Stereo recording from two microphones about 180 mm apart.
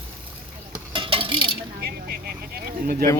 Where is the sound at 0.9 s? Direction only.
30° right (ahead or behind).